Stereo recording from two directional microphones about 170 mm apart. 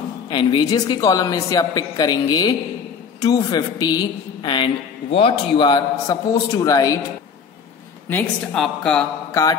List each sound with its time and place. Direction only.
0.3 s a woman's voice: 30° left (ahead or behind)
8.1 s a woman's voice: 5° left (ahead or behind)
9.3 s mantra: 20° left (ahead or behind)